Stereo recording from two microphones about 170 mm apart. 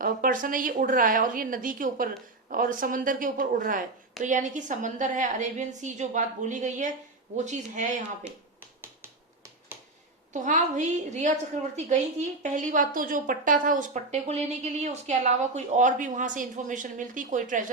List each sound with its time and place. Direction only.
0.0 s a woman's voice: 55° right (ahead or behind)
10.3 s a woman's voice: 45° right (ahead or behind)